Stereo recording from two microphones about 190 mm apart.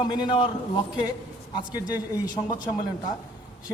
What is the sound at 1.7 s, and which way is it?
Speech, 20° left (ahead or behind).